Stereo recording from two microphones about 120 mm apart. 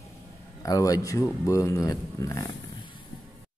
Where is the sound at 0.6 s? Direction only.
30° left (ahead or behind).